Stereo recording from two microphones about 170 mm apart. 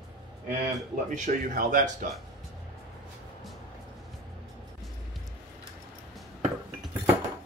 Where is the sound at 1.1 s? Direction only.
50° right (ahead or behind).